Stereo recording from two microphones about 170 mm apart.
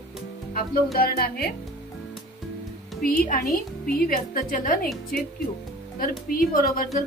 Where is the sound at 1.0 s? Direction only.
65° left (ahead or behind).